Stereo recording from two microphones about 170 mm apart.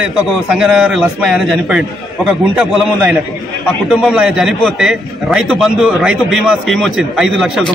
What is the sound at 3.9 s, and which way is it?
Speech, 5° right (ahead or behind).